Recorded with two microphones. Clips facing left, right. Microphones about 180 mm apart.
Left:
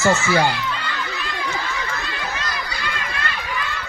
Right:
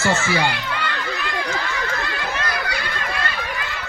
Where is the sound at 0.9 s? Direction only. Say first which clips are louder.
Right 2 dB; 45° right (ahead or behind).